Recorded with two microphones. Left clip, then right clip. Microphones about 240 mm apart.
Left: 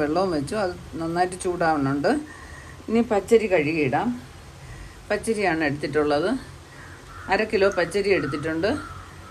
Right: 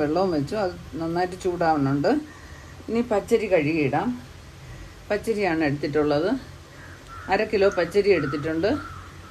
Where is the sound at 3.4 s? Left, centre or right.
Left.